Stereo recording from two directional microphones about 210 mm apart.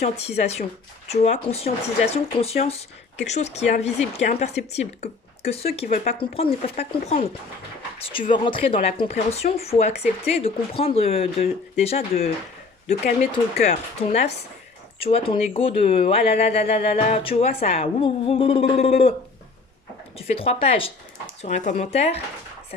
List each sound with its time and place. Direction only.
0.3 s speech: 30° left (ahead or behind)
13.3 s speech: 30° left (ahead or behind)
20.1 s speech: 25° left (ahead or behind)